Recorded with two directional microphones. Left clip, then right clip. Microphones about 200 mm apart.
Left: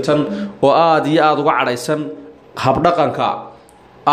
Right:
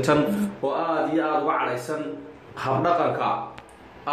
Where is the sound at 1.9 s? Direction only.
50° left (ahead or behind).